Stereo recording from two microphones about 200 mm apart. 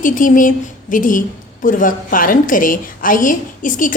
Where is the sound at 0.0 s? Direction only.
40° left (ahead or behind).